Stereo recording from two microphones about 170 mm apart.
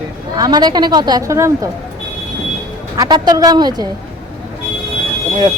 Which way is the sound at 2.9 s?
25° right (ahead or behind).